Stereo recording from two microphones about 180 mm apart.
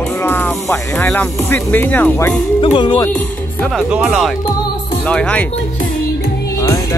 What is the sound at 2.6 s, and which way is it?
Speech, 25° left (ahead or behind).